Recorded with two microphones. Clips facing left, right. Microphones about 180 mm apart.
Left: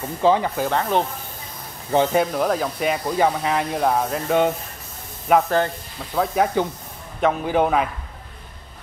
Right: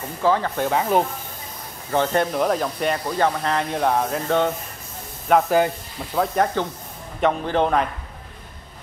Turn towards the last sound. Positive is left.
turn(degrees=5)  # may be behind; listen again after turning